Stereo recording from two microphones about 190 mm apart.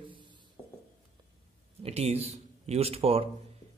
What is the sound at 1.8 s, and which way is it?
Speech, 35° right (ahead or behind).